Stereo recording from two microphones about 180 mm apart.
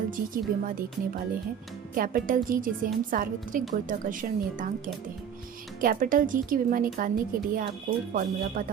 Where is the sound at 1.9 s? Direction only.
50° right (ahead or behind).